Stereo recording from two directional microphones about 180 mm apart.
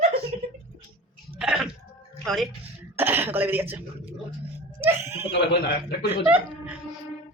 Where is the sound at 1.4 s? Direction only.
5° right (ahead or behind).